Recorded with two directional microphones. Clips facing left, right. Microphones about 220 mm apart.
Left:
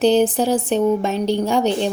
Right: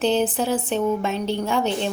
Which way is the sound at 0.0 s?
35° left (ahead or behind).